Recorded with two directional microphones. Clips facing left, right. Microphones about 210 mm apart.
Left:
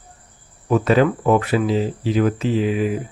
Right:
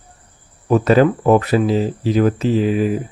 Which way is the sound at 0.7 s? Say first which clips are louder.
Right 3 dB; 40° right (ahead or behind).